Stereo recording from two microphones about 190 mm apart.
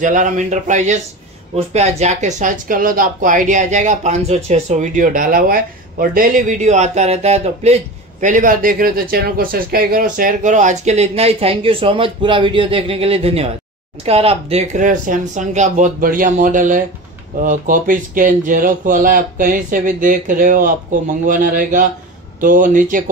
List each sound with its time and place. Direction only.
0.0 s speech: 45° right (ahead or behind)